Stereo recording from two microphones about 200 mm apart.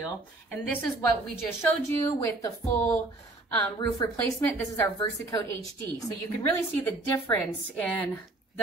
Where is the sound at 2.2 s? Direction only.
10° left (ahead or behind).